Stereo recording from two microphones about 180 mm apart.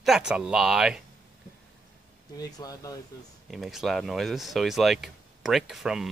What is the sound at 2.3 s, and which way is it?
Speech, 20° left (ahead or behind).